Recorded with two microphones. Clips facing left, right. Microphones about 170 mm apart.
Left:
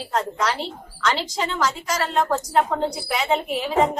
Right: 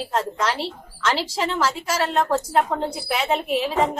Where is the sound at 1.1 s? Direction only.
30° right (ahead or behind).